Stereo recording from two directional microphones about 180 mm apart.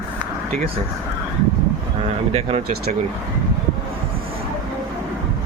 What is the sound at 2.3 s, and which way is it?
Speech, 35° right (ahead or behind).